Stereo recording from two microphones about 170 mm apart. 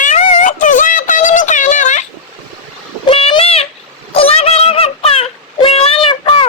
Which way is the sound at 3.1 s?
30° left (ahead or behind).